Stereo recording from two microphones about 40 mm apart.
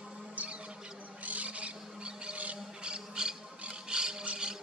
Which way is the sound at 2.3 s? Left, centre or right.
Right.